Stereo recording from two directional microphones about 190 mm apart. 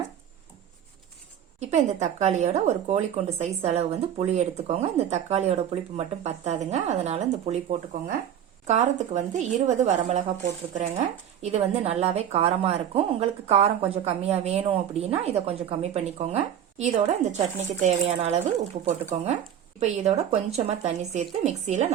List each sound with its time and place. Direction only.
1.5 s speech: 35° right (ahead or behind)
11.4 s speech: 35° right (ahead or behind)